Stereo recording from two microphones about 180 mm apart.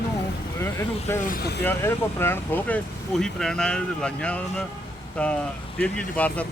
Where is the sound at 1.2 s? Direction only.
55° left (ahead or behind).